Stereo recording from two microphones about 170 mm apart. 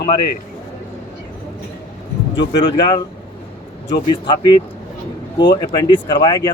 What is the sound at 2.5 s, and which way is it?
Speech, 25° left (ahead or behind).